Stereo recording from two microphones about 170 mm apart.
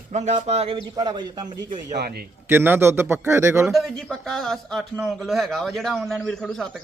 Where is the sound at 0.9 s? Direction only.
25° right (ahead or behind).